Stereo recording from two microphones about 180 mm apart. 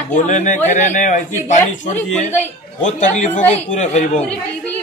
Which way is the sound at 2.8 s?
40° left (ahead or behind).